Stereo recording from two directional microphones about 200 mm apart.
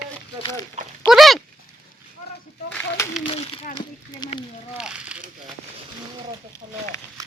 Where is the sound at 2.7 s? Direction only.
5° left (ahead or behind).